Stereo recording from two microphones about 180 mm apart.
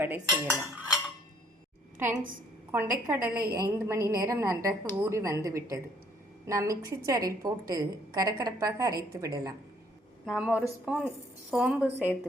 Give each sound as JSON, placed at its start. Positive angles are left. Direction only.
{"t": 0.0, "sound": "a woman's voice", "side_deg": -10}
{"t": 2.7, "sound": "a woman's voice", "side_deg": -10}
{"t": 10.2, "sound": "a woman's voice", "side_deg": -5}